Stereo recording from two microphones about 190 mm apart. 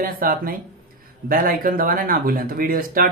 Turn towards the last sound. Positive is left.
turn(degrees=-50)  # may be behind; listen again after turning